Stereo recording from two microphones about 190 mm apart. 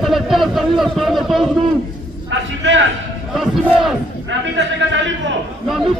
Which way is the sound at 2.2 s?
70° right (ahead or behind).